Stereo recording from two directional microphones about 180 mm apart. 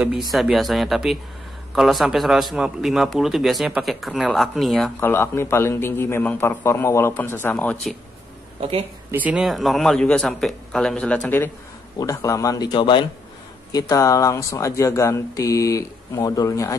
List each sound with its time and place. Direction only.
0.3 s a man's voice: centre (ahead or behind)
5.0 s speech: 15° left (ahead or behind)
8.5 s speech: 30° right (ahead or behind)
9.1 s a man's voice: 10° right (ahead or behind); by 16.7 s 20° left (ahead or behind)